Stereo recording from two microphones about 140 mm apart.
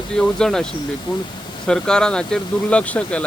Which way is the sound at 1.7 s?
5° left (ahead or behind).